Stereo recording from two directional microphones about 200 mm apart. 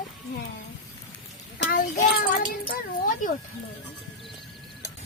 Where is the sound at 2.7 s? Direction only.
40° left (ahead or behind).